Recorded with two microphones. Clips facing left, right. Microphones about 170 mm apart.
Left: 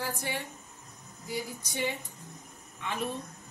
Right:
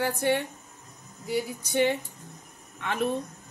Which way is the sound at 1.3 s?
65° right (ahead or behind).